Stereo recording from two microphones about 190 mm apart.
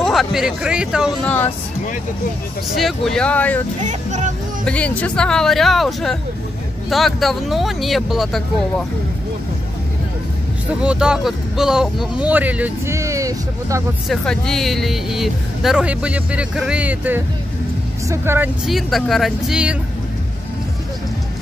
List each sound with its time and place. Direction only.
0.0 s speech: centre (ahead or behind)
2.8 s speech: centre (ahead or behind)
3.8 s speech: 40° right (ahead or behind)
4.6 s speech: 5° left (ahead or behind)
10.7 s speech: 5° right (ahead or behind)
14.0 s speech: centre (ahead or behind)
18.7 s speech: centre (ahead or behind)